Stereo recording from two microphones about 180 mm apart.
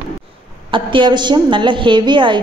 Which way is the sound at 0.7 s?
30° right (ahead or behind).